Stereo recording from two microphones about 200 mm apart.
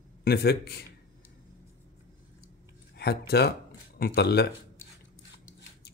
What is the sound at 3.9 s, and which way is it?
Speech, 50° left (ahead or behind).